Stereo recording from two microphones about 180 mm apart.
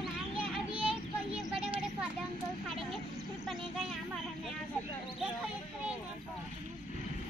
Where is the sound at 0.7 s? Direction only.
30° right (ahead or behind).